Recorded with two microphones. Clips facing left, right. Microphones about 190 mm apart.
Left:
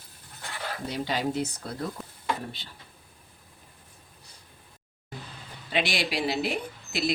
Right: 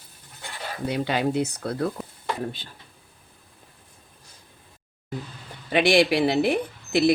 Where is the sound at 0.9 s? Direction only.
60° right (ahead or behind).